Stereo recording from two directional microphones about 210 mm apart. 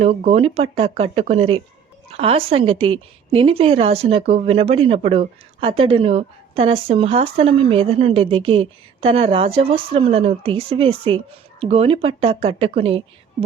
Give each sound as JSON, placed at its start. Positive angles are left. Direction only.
{"t": 0.0, "sound": "a woman's voice", "side_deg": -30}